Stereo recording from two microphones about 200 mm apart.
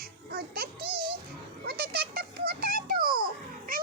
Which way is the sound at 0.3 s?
50° right (ahead or behind).